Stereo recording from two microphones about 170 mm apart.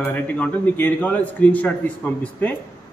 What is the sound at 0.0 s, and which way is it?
A man's voice, 10° left (ahead or behind).